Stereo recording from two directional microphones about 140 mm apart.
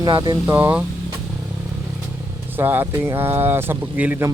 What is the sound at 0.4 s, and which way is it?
Speech, 15° right (ahead or behind).